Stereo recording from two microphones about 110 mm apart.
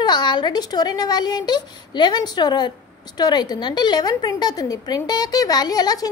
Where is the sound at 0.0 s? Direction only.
40° left (ahead or behind).